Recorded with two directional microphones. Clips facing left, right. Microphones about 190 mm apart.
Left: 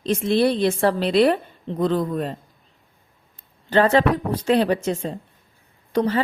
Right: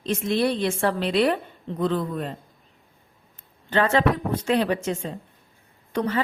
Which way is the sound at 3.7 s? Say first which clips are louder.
Left 4 dB; 35° left (ahead or behind).